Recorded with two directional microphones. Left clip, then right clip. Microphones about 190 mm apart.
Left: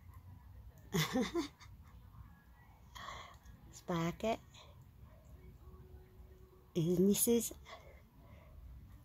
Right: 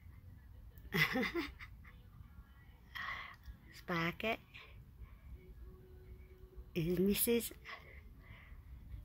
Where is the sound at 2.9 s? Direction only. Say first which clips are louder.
Right 5 dB; 15° left (ahead or behind).